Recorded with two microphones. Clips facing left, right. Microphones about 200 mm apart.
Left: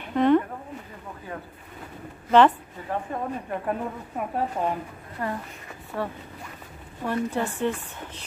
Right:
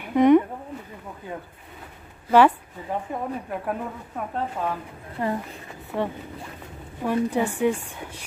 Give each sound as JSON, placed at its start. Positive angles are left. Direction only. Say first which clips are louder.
{"t": 0.0, "sound": "a sound", "louder": "right 4 dB", "side_deg": -15}
{"t": 2.3, "sound": "a woman's voice", "louder": "right 1 dB", "side_deg": -10}
{"t": 4.2, "sound": "speech", "louder": "left 1 dB", "side_deg": 15}
{"t": 5.2, "sound": "speech", "louder": "right 4 dB", "side_deg": -20}
{"t": 5.9, "sound": "a woman's voice", "louder": "right 4 dB", "side_deg": -10}